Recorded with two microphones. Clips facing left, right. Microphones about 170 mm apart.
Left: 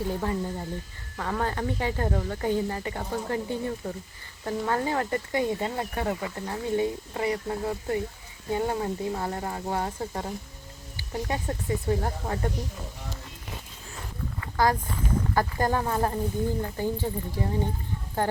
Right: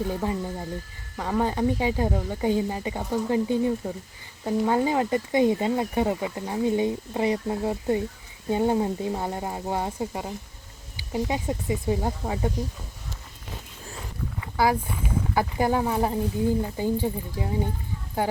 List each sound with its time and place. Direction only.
1.1 s speech: 15° right (ahead or behind)
14.4 s speech: 10° right (ahead or behind)